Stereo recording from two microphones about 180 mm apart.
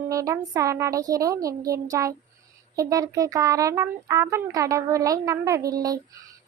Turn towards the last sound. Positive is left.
turn(degrees=-20)  # may be behind; listen again after turning